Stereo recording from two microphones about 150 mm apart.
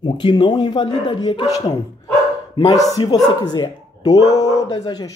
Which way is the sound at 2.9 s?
25° left (ahead or behind).